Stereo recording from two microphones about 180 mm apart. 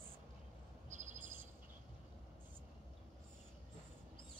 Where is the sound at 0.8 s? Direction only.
40° right (ahead or behind).